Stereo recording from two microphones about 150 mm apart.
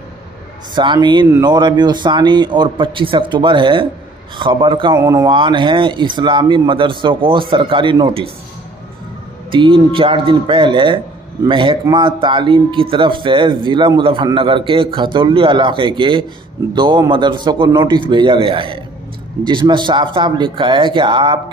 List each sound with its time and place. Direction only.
0.7 s speech: 30° right (ahead or behind)
5.0 s speech: 20° right (ahead or behind)
5.3 s speech: 35° right (ahead or behind)
9.5 s speech: 35° right (ahead or behind)